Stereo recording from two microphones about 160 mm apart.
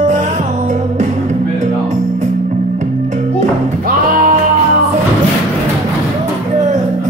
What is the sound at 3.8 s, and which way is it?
Music, 60° right (ahead or behind).